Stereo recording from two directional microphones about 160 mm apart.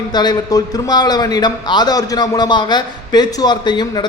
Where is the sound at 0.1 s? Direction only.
25° left (ahead or behind).